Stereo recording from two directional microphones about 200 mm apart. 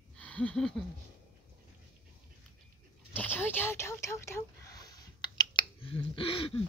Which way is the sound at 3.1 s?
10° left (ahead or behind).